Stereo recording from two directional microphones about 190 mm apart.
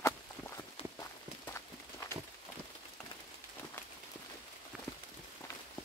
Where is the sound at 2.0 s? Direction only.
15° left (ahead or behind).